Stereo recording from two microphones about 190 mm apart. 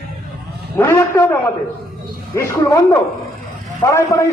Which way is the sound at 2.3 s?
15° left (ahead or behind).